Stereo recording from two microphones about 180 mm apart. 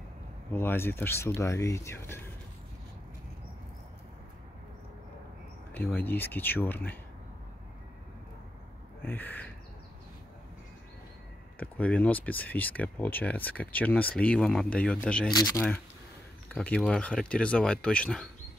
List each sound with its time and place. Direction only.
0.5 s speech: 10° left (ahead or behind)
5.7 s speech: 10° left (ahead or behind)
9.0 s speech: 10° left (ahead or behind)
11.6 s speech: 10° left (ahead or behind)
15.3 s speech: 20° left (ahead or behind)
16.5 s speech: 10° left (ahead or behind)